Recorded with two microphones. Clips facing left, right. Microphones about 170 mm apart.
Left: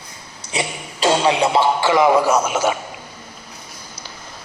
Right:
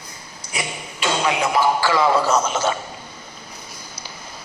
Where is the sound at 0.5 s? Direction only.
35° left (ahead or behind); by 2.7 s 10° left (ahead or behind).